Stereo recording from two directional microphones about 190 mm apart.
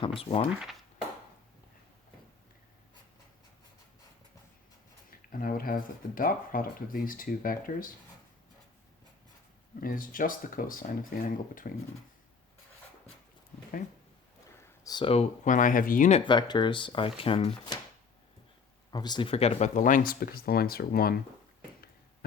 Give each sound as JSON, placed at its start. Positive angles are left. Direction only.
{"t": 0.2, "sound": "speech", "side_deg": 30}
{"t": 5.1, "sound": "speech", "side_deg": 50}
{"t": 9.8, "sound": "speech", "side_deg": 45}
{"t": 14.6, "sound": "speech", "side_deg": 20}
{"t": 16.2, "sound": "speech", "side_deg": 25}
{"t": 18.9, "sound": "speech", "side_deg": 20}